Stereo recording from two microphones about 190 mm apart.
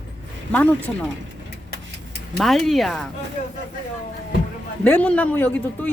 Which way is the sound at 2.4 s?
Centre (ahead or behind).